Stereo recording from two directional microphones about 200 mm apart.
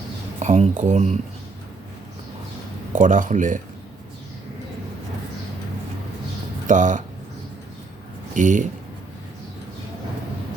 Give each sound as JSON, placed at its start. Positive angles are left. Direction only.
{"t": 0.3, "sound": "speech", "side_deg": -35}
{"t": 2.9, "sound": "speech", "side_deg": -40}
{"t": 6.7, "sound": "speech", "side_deg": -40}
{"t": 8.3, "sound": "speech", "side_deg": -40}